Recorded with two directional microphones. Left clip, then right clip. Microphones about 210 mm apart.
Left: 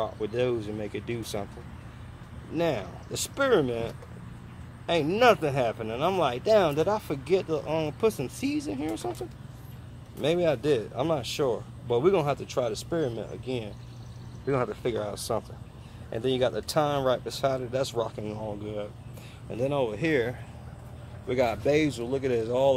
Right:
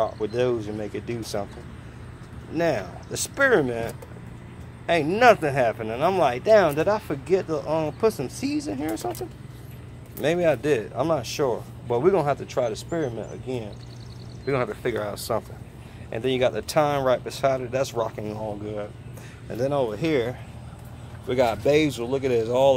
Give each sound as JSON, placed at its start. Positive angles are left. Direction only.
{"t": 0.0, "sound": "speech", "side_deg": 5}
{"t": 2.5, "sound": "speech", "side_deg": 5}
{"t": 10.2, "sound": "speech", "side_deg": 0}